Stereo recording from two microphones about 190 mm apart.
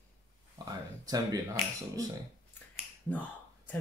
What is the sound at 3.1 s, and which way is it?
Speech, 10° left (ahead or behind).